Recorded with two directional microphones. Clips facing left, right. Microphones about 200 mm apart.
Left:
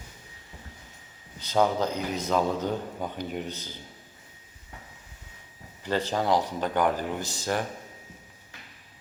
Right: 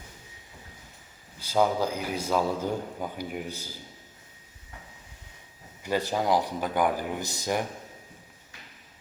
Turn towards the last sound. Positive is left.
turn(degrees=-15)  # may be behind; listen again after turning